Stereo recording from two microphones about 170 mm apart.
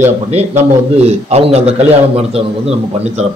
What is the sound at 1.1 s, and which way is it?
Speech, 35° right (ahead or behind).